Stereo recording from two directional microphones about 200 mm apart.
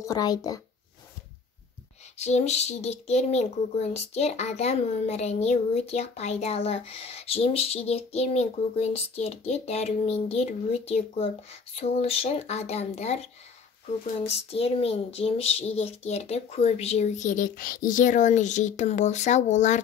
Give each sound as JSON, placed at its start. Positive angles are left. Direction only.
{"t": 0.0, "sound": "speech", "side_deg": 20}
{"t": 2.1, "sound": "a child's voice", "side_deg": 35}